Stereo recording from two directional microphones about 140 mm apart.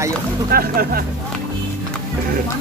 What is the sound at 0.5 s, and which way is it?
Speech, 90° right.